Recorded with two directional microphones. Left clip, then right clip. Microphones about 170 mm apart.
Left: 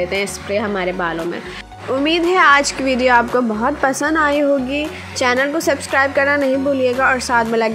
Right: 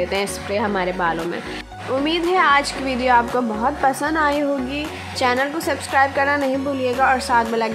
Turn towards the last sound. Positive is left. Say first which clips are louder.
# left 1 dB
turn(degrees=15)  # may be behind; listen again after turning